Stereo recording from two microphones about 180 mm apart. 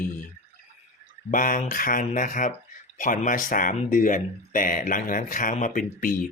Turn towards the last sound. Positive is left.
turn(degrees=50)  # may be behind; listen again after turning